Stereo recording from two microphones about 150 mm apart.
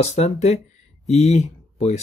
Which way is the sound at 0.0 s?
45° left (ahead or behind).